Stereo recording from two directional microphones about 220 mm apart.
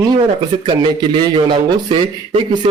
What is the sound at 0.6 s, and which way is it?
A man's voice, 20° right (ahead or behind).